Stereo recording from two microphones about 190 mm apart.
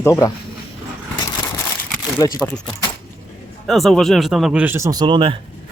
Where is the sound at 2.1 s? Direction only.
20° left (ahead or behind).